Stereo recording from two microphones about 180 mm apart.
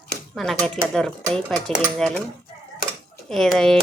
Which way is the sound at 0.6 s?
5° left (ahead or behind).